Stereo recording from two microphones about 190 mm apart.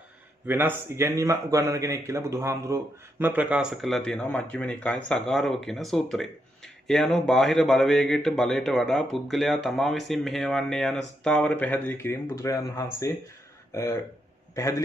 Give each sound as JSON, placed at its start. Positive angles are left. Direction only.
{"t": 0.5, "sound": "a man's voice", "side_deg": -10}